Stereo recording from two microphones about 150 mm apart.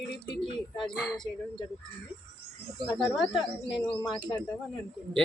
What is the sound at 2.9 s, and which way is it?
Speech, centre (ahead or behind).